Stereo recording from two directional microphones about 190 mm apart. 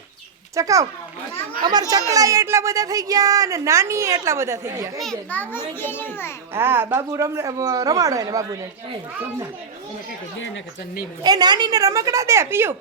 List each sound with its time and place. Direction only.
0.5 s speech: 15° right (ahead or behind)
1.9 s speech: 20° right (ahead or behind)
4.9 s a child's voice: 5° left (ahead or behind)
6.5 s speech: 10° right (ahead or behind)
11.2 s speech: 20° right (ahead or behind)